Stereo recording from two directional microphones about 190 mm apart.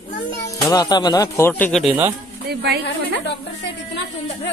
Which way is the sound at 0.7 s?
20° left (ahead or behind).